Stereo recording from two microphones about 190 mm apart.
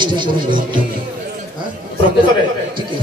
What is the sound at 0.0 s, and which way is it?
Speech, 25° right (ahead or behind).